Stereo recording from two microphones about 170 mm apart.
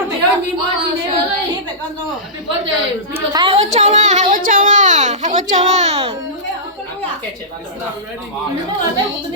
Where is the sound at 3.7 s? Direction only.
45° right (ahead or behind).